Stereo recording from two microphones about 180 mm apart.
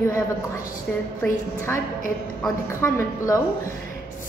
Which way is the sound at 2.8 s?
15° left (ahead or behind).